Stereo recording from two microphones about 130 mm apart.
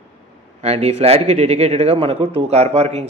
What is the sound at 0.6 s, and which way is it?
A man's voice, 55° right (ahead or behind).